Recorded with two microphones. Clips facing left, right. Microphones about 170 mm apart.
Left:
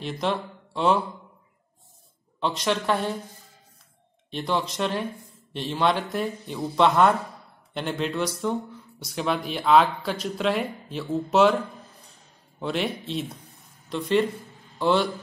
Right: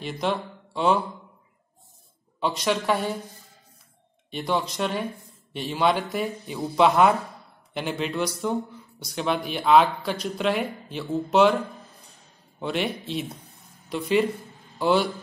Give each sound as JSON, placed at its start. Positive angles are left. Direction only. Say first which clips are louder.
{"t": 0.0, "sound": "speech", "louder": "even", "side_deg": 0}
{"t": 2.4, "sound": "speech", "louder": "right 1 dB", "side_deg": 0}
{"t": 4.3, "sound": "speech", "louder": "even", "side_deg": -5}
{"t": 12.5, "sound": "a man's voice", "louder": "even", "side_deg": 0}